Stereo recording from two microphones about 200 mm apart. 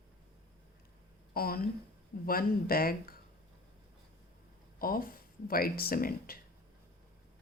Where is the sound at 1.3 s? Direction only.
50° left (ahead or behind).